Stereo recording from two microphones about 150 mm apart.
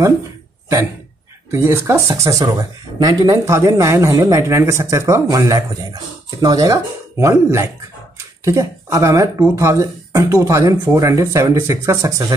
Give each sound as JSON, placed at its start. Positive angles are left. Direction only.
{"t": 1.5, "sound": "speech", "side_deg": -15}